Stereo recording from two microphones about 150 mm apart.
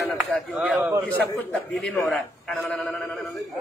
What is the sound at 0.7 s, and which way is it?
Speech, 20° right (ahead or behind).